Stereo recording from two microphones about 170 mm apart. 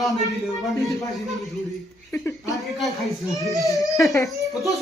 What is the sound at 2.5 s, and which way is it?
Speech, centre (ahead or behind).